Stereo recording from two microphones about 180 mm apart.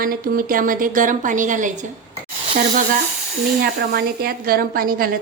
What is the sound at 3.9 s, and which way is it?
A woman's voice, 55° right (ahead or behind).